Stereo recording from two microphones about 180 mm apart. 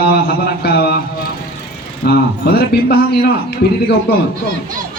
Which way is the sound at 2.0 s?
60° left (ahead or behind).